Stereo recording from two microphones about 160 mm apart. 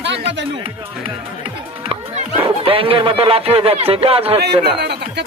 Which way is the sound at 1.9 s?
35° right (ahead or behind).